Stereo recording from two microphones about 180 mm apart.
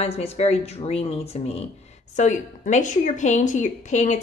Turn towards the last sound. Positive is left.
turn(degrees=40)  # may be behind; listen again after turning